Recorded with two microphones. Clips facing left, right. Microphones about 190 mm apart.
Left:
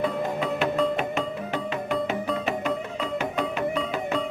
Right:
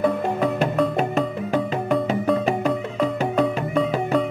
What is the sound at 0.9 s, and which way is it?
Music, 40° right (ahead or behind).